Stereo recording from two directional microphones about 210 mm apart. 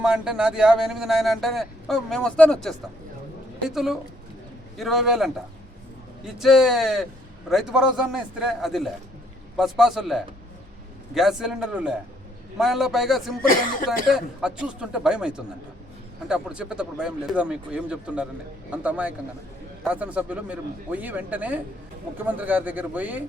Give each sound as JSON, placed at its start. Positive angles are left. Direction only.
{"t": 0.0, "sound": "speech", "side_deg": -5}
{"t": 13.4, "sound": "speech", "side_deg": 40}
{"t": 13.8, "sound": "speech", "side_deg": -5}